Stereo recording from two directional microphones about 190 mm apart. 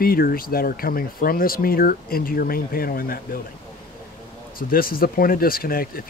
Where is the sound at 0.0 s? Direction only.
50° left (ahead or behind).